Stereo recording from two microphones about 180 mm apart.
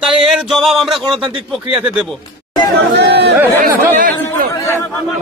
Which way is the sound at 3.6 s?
50° right (ahead or behind).